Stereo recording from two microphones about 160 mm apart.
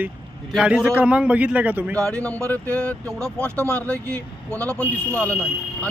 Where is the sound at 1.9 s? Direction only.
5° left (ahead or behind).